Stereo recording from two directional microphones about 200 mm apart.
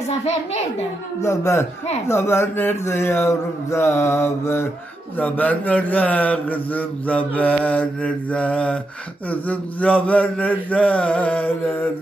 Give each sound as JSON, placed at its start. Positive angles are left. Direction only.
{"t": 1.2, "sound": "a man's voice", "side_deg": 15}